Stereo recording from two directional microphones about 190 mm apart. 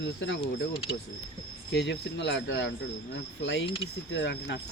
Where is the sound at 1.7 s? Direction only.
65° left (ahead or behind).